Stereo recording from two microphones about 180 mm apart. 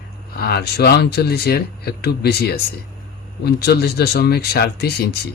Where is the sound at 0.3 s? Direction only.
60° left (ahead or behind).